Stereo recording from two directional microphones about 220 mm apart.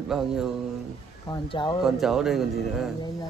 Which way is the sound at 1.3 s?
20° left (ahead or behind).